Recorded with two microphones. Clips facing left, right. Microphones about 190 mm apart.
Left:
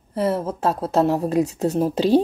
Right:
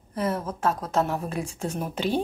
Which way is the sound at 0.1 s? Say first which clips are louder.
Left 6 dB; 35° left (ahead or behind).